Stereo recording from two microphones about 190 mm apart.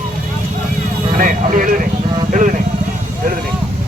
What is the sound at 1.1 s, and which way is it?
Speech, 45° right (ahead or behind).